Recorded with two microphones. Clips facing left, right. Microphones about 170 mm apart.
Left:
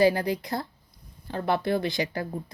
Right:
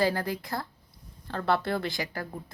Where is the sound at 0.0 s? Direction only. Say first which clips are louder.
Left 5 dB; 20° left (ahead or behind).